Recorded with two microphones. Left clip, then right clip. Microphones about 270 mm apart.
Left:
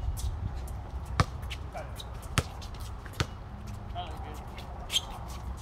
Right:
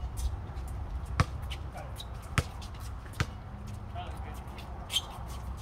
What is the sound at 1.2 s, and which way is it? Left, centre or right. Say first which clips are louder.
Basketball bounce: left 2 dB; left.